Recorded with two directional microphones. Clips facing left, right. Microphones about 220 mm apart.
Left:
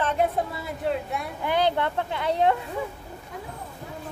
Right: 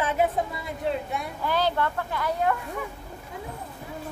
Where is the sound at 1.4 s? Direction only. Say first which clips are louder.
Left 2 dB; 20° left (ahead or behind).